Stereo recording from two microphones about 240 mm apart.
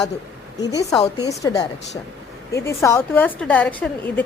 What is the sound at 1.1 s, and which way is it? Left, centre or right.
A woman's voice, centre.